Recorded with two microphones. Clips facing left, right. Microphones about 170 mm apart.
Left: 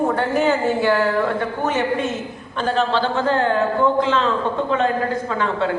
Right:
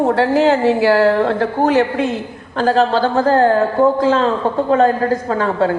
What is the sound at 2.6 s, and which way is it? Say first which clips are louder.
Speech: right 6 dB; 35° right (ahead or behind).